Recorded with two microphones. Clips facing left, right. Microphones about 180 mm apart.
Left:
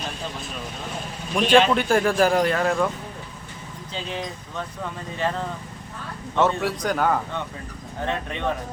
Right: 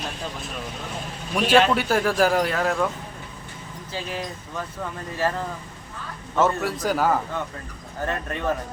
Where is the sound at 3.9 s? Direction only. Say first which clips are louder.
Even; 5° right (ahead or behind).